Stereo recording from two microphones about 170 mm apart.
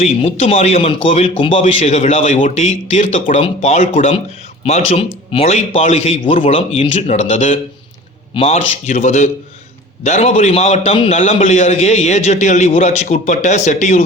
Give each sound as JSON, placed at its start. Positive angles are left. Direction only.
{"t": 0.0, "sound": "a man's voice", "side_deg": 40}
{"t": 6.4, "sound": "a man's voice", "side_deg": 30}
{"t": 8.3, "sound": "a man's voice", "side_deg": 30}
{"t": 8.5, "sound": "a man's voice", "side_deg": 45}